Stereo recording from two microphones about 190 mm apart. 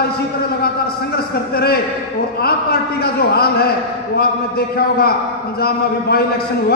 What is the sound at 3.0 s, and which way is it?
Speech, 55° left (ahead or behind).